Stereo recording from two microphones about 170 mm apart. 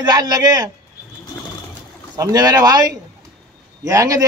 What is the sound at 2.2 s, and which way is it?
A man's voice, 20° right (ahead or behind).